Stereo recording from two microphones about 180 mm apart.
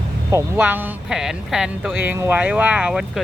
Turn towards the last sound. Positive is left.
turn(degrees=-5)  # may be behind; listen again after turning